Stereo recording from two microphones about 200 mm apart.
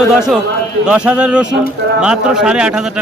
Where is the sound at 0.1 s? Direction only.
5° right (ahead or behind).